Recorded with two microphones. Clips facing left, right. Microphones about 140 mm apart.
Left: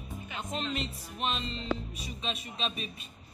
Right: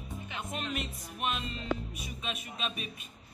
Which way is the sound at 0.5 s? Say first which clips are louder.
Left 3 dB; 10° right (ahead or behind).